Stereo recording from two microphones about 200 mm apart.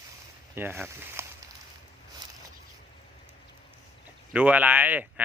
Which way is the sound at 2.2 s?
20° right (ahead or behind).